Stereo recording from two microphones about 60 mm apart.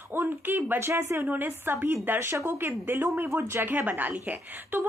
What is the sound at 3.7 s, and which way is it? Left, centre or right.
Speech, right.